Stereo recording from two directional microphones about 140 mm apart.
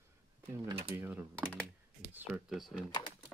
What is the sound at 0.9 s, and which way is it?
Speech, 15° right (ahead or behind).